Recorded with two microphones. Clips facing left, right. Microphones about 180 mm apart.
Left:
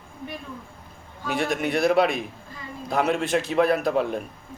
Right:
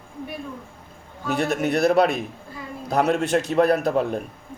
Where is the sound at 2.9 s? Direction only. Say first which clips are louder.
Right 2 dB; 45° right (ahead or behind).